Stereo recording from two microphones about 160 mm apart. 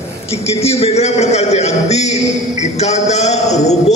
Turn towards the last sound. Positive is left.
turn(degrees=45)  # may be behind; listen again after turning